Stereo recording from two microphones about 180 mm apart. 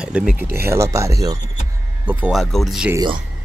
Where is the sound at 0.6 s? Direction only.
15° right (ahead or behind); by 2.8 s centre (ahead or behind).